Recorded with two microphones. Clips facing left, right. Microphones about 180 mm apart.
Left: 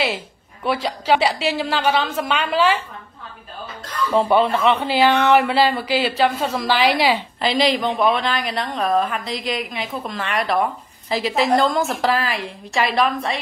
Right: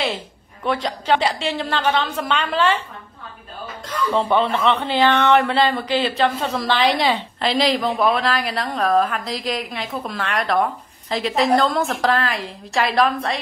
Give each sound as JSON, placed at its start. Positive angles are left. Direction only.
{"t": 0.7, "sound": "a woman's voice", "side_deg": 10}
{"t": 4.2, "sound": "a woman's voice", "side_deg": 10}